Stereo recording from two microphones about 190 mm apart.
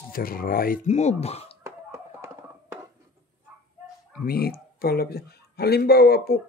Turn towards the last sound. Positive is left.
turn(degrees=55)  # may be behind; listen again after turning